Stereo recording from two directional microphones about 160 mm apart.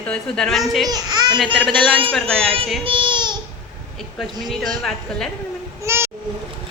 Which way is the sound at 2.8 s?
30° right (ahead or behind).